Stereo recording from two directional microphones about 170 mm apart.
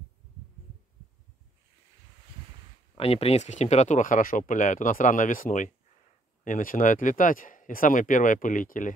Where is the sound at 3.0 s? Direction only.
35° left (ahead or behind).